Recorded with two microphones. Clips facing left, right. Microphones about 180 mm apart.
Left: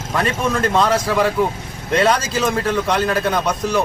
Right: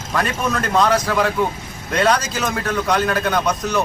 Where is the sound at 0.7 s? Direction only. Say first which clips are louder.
Right 3 dB; 30° left (ahead or behind).